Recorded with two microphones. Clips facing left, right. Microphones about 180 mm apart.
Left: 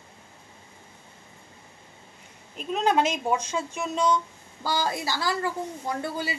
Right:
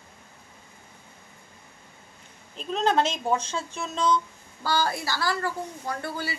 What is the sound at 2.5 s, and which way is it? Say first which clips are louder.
A woman's voice: even; 10° left (ahead or behind).